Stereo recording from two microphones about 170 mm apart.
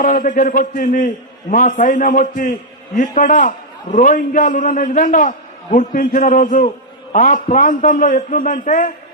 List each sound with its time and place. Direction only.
0.0 s a man's voice: 50° left (ahead or behind)